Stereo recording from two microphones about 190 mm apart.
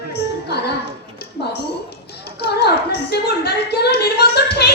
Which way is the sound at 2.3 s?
60° left (ahead or behind).